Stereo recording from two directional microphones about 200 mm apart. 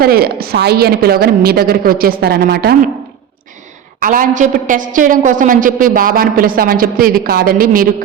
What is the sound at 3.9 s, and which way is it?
A woman's voice, 45° right (ahead or behind).